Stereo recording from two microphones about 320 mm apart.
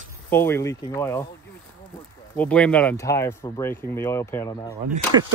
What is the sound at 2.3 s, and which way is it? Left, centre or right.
Speech, centre.